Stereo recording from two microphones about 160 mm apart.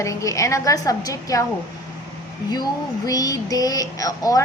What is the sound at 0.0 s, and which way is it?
Speech, 20° left (ahead or behind).